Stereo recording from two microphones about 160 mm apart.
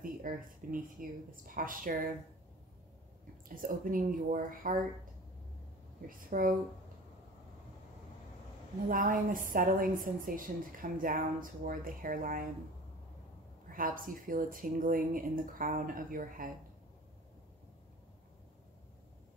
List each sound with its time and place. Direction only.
0.0 s a woman's voice: 60° right (ahead or behind)
3.4 s a woman's voice: 60° right (ahead or behind)
6.0 s a woman's voice: 60° right (ahead or behind)
8.8 s a woman's voice: 60° right (ahead or behind)
13.7 s a woman's voice: 60° right (ahead or behind)